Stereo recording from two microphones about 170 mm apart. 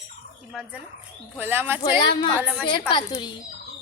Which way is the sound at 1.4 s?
10° right (ahead or behind).